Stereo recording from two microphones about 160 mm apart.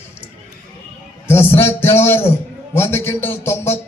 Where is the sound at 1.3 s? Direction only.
15° left (ahead or behind).